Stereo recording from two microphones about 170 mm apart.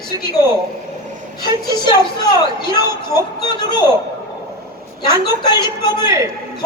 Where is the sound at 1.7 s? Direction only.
25° left (ahead or behind).